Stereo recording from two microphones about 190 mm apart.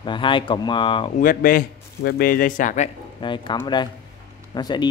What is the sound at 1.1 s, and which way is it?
Speech, 45° left (ahead or behind).